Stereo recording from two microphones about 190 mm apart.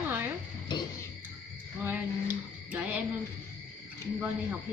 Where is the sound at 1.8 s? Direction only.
10° right (ahead or behind).